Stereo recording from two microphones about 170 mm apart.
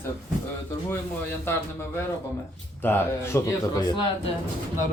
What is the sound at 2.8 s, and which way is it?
Speech, 10° left (ahead or behind).